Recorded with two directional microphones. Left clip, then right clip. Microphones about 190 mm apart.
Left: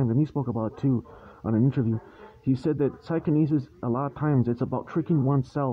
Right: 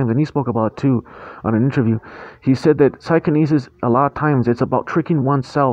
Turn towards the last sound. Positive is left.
turn(degrees=-20)  # may be behind; listen again after turning